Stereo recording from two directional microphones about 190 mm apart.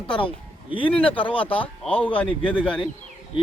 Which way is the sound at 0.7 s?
25° left (ahead or behind).